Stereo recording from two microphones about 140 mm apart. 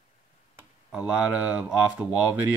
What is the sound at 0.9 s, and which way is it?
Speech, 5° right (ahead or behind).